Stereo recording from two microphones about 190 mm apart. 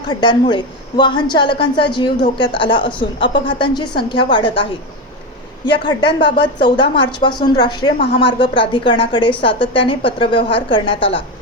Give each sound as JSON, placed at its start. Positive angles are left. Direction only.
{"t": 0.1, "sound": "a woman's voice", "side_deg": 25}